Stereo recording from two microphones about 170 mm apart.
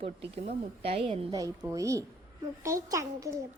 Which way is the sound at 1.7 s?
20° right (ahead or behind).